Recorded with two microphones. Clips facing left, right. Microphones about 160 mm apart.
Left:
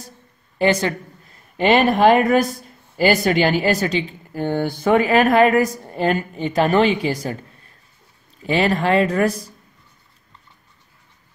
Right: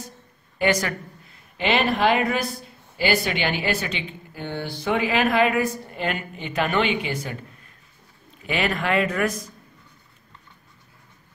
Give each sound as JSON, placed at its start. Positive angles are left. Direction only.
{"t": 0.6, "sound": "a woman's voice", "side_deg": 30}
{"t": 1.6, "sound": "speech", "side_deg": 45}
{"t": 8.5, "sound": "speech", "side_deg": 35}